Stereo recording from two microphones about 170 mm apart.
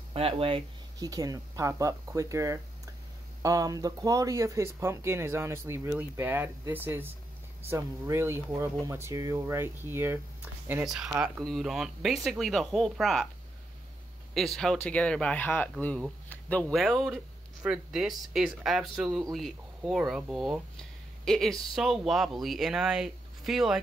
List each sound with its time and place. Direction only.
0.1 s speech: 35° right (ahead or behind)
0.9 s speech: 20° right (ahead or behind); by 13.3 s centre (ahead or behind)
14.3 s speech: centre (ahead or behind)
16.3 s a sound: 10° left (ahead or behind)
16.7 s speech: centre (ahead or behind)